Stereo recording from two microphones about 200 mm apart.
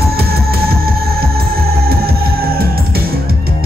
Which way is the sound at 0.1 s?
50° right (ahead or behind).